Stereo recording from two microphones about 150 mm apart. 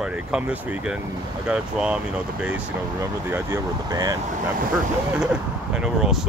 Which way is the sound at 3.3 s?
20° right (ahead or behind).